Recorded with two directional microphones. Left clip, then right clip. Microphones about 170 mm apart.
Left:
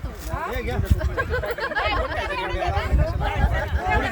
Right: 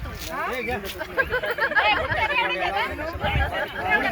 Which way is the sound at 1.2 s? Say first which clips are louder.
Right 3 dB; 35° left (ahead or behind).